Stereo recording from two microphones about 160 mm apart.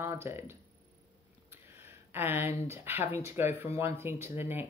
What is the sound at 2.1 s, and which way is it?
Speech, 15° right (ahead or behind).